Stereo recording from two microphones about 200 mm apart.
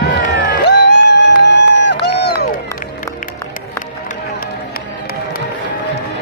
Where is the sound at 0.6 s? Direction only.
60° left (ahead or behind).